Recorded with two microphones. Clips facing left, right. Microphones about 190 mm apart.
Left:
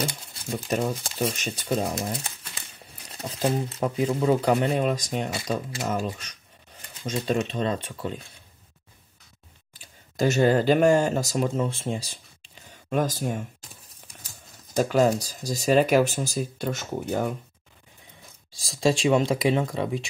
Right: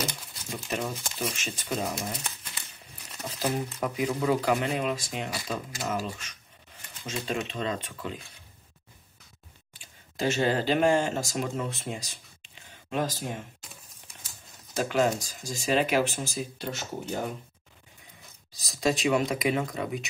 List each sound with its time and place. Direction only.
0.0 s speech: 30° left (ahead or behind)
3.1 s speech: 30° left (ahead or behind)
5.3 s speech: 30° left (ahead or behind)
7.1 s speech: 40° left (ahead or behind)
9.8 s speech: 40° left (ahead or behind)
12.9 s a sound: 45° left (ahead or behind)
14.8 s speech: 40° left (ahead or behind)
18.5 s speech: 30° left (ahead or behind)